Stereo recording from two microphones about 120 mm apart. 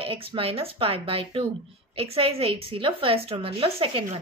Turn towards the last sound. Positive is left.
turn(degrees=-50)  # may be behind; listen again after turning